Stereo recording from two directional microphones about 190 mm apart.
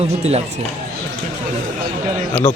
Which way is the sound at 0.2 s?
35° right (ahead or behind).